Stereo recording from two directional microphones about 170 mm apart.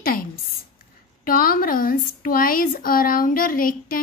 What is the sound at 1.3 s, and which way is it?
A woman's voice, 55° left (ahead or behind).